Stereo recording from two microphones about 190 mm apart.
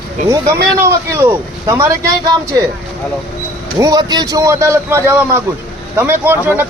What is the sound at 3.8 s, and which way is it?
Speech, 20° right (ahead or behind).